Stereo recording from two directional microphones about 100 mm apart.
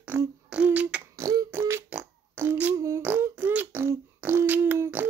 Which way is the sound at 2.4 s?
20° right (ahead or behind).